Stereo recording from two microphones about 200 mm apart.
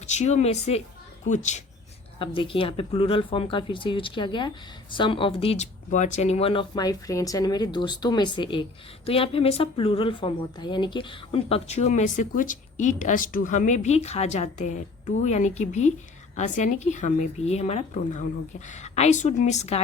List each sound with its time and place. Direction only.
0.0 s a woman's voice: 35° left (ahead or behind)
2.1 s a woman's voice: 25° left (ahead or behind)